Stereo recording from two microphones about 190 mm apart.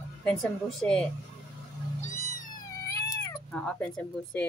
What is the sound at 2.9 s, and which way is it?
Cat, 15° left (ahead or behind).